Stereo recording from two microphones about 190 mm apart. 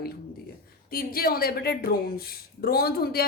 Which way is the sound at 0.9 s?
50° left (ahead or behind).